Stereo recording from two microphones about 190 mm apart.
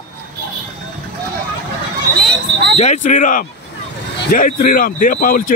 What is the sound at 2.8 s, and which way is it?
Speech, 40° left (ahead or behind).